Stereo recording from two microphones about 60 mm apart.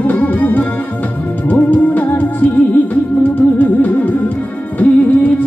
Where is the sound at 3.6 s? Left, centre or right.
Left.